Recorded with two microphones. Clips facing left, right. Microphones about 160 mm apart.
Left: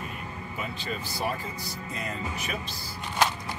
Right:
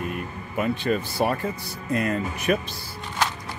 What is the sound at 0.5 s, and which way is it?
Speech, 55° right (ahead or behind).